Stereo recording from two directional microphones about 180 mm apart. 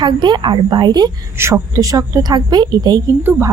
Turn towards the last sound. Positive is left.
turn(degrees=-20)  # may be behind; listen again after turning